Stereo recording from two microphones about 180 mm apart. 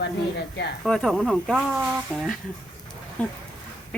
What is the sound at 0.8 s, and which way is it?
Speech, 5° left (ahead or behind).